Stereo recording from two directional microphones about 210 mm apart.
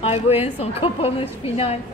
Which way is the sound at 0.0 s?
30° left (ahead or behind).